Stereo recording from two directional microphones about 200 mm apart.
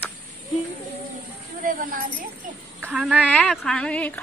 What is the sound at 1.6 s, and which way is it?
Speech, 45° right (ahead or behind).